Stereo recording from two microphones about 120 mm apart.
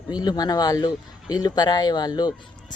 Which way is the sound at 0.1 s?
35° left (ahead or behind).